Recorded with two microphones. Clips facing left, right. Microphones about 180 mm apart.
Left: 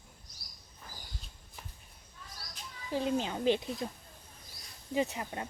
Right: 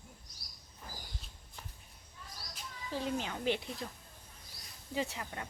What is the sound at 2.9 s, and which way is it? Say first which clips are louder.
A child's voice: left 5 dB; 15° left (ahead or behind).